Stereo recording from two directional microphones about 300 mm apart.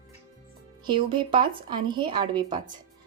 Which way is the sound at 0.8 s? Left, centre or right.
Centre.